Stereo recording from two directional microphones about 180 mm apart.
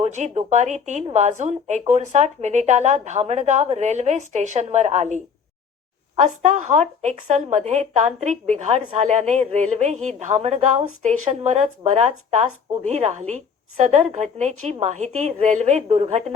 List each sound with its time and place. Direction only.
0.0 s speech: 40° right (ahead or behind)